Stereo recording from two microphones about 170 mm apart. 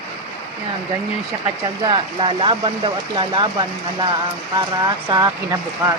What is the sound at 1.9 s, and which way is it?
Speech, 30° right (ahead or behind).